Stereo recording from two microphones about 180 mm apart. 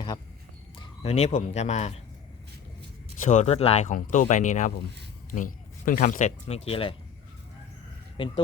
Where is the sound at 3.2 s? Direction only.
40° left (ahead or behind).